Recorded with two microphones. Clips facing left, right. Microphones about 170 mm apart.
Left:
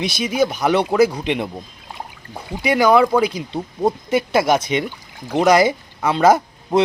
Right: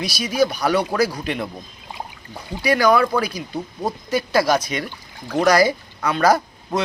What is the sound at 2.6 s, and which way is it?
Speech, 20° left (ahead or behind).